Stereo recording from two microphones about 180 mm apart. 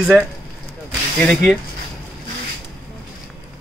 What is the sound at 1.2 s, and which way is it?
Speech, 5° left (ahead or behind).